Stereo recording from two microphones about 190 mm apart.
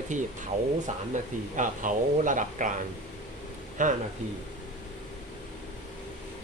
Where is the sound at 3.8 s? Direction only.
45° right (ahead or behind).